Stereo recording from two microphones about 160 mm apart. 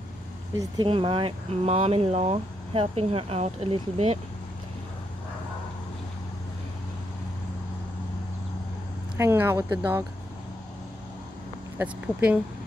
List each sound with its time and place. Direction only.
0.8 s speech: 35° right (ahead or behind)
9.1 s speech: 15° right (ahead or behind)
11.8 s speech: 10° right (ahead or behind)